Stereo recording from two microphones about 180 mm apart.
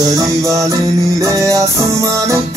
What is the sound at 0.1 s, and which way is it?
Music, 20° right (ahead or behind).